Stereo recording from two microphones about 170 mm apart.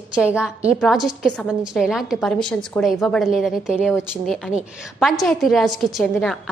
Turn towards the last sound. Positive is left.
turn(degrees=5)  # may be behind; listen again after turning